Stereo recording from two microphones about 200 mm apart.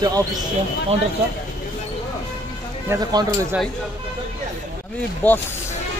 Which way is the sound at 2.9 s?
20° right (ahead or behind).